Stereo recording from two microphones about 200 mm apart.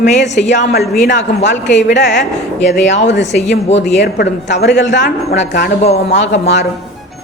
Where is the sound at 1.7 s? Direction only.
60° left (ahead or behind).